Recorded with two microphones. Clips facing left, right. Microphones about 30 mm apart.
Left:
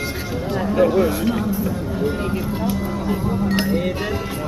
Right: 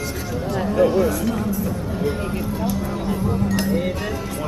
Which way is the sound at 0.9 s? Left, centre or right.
Left.